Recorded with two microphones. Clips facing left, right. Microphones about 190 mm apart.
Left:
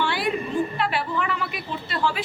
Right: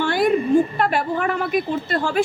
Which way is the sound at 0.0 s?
45° right (ahead or behind).